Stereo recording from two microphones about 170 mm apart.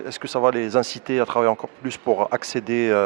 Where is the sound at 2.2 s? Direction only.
20° right (ahead or behind).